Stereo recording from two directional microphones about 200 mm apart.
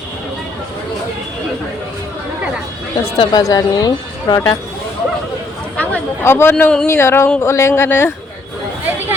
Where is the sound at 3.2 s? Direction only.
20° left (ahead or behind).